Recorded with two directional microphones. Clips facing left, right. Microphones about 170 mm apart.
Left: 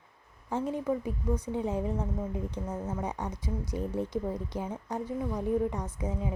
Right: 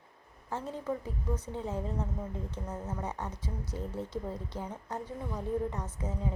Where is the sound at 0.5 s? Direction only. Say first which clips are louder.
Left 5 dB; 15° left (ahead or behind).